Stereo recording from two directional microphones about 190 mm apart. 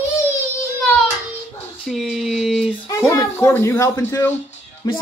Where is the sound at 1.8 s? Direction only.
Centre (ahead or behind).